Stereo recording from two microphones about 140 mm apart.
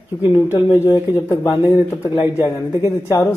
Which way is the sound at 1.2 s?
20° left (ahead or behind).